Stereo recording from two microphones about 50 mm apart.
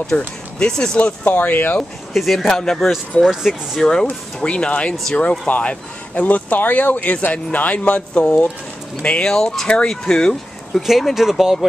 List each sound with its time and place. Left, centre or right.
0.1 s speech: left
0.6 s speech: centre
0.9 s speech: left
2.1 s speech: centre
3.3 s speech: centre
3.8 s speech: centre